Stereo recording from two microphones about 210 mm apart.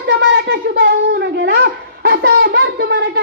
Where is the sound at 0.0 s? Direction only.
60° right (ahead or behind).